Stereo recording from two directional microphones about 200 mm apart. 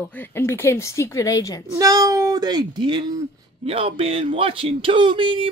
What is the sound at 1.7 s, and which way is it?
Speech, 20° right (ahead or behind).